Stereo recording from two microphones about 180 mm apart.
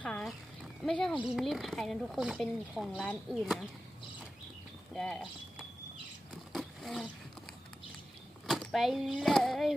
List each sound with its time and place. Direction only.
0.0 s speech: 5° left (ahead or behind)
4.9 s speech: centre (ahead or behind)
6.5 s roaring cats: centre (ahead or behind)
8.4 s speech: centre (ahead or behind)